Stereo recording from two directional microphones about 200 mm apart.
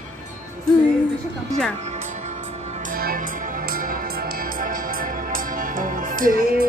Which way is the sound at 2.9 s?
45° right (ahead or behind).